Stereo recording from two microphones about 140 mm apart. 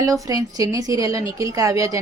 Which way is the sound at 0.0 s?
25° right (ahead or behind).